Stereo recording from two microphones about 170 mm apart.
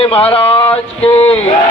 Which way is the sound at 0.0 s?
35° left (ahead or behind).